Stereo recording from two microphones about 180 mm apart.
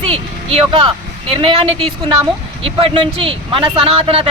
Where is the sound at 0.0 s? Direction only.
30° right (ahead or behind).